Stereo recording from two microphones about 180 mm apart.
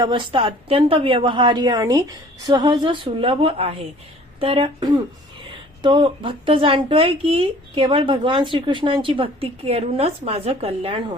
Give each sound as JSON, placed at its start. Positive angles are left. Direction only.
{"t": 0.0, "sound": "a woman's voice", "side_deg": -25}